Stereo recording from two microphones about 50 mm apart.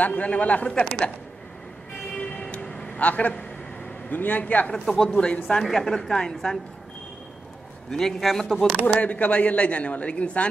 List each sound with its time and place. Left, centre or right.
0.0 s a man's voice: left
0.7 s a woman's voice: centre
2.1 s vehicle: centre
3.0 s a man's voice: left
4.8 s a woman's voice: centre
5.1 s a man's voice: left
5.5 s a woman's voice: centre
7.9 s a woman's voice: centre
9.0 s a man's voice: left